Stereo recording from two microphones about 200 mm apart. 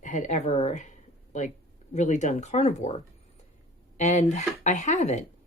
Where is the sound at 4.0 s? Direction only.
35° left (ahead or behind).